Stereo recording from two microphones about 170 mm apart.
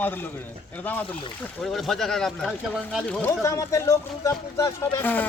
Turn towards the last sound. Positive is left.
turn(degrees=10)  # may be behind; listen again after turning